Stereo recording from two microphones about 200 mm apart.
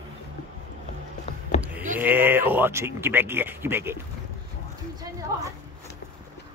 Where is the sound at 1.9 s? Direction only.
10° right (ahead or behind).